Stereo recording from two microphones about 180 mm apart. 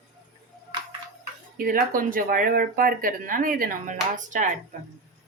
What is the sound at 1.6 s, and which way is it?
Speech, 50° right (ahead or behind).